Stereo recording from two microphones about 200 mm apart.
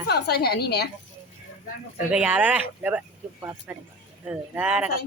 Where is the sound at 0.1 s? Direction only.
55° left (ahead or behind).